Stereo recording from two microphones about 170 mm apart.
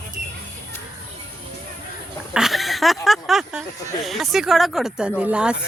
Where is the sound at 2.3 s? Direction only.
Centre (ahead or behind).